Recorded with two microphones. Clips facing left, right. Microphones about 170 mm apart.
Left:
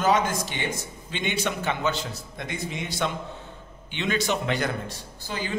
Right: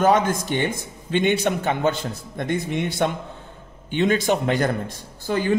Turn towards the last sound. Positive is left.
turn(degrees=-55)  # may be behind; listen again after turning